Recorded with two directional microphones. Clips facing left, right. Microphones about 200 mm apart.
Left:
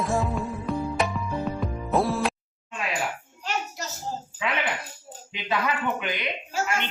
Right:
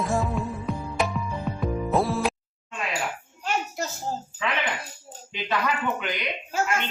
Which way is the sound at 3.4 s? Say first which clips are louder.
Right 3 dB; 55° right (ahead or behind).